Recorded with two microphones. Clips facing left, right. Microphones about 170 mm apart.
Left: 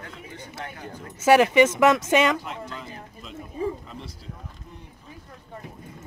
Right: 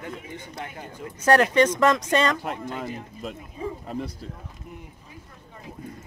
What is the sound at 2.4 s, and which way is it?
Speech, 50° right (ahead or behind).